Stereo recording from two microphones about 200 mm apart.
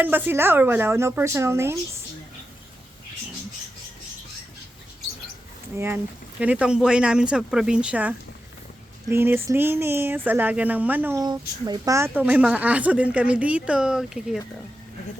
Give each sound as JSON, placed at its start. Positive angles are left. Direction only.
{"t": 0.0, "sound": "speech", "side_deg": -10}
{"t": 5.7, "sound": "speech", "side_deg": -10}